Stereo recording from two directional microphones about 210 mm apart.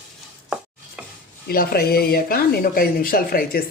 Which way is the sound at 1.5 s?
45° left (ahead or behind).